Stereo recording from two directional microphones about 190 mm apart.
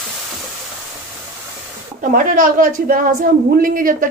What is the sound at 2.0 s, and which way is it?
A woman's voice, 45° right (ahead or behind).